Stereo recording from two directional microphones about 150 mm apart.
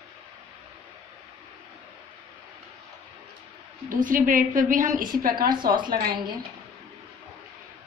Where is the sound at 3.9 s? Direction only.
65° right (ahead or behind).